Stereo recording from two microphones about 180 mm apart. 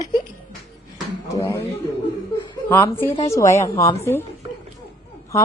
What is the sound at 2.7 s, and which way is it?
A woman's voice, 15° left (ahead or behind).